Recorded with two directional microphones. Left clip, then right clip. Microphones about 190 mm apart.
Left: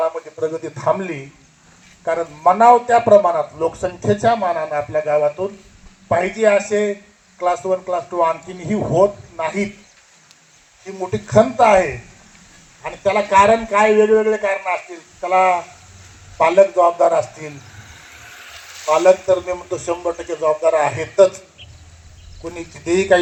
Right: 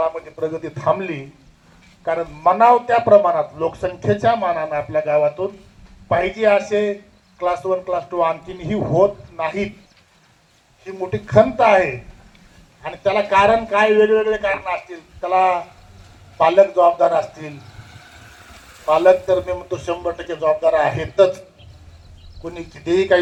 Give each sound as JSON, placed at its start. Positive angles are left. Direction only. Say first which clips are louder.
{"t": 0.0, "sound": "a man's voice", "louder": "left 1 dB", "side_deg": 45}
{"t": 10.8, "sound": "a man's voice", "louder": "left 1 dB", "side_deg": 45}
{"t": 17.9, "sound": "boat", "louder": "left 6 dB", "side_deg": -60}
{"t": 18.9, "sound": "a man's voice", "louder": "even", "side_deg": 45}
{"t": 22.4, "sound": "a man's voice", "louder": "left 1 dB", "side_deg": 45}